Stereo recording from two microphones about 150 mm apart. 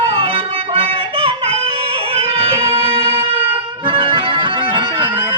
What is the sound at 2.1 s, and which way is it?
Music, 35° right (ahead or behind).